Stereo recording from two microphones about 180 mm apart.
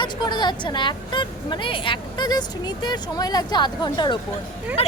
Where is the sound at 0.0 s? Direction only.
25° left (ahead or behind).